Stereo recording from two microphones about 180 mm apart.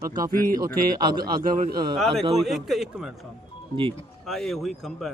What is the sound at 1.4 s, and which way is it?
Speech, 50° right (ahead or behind).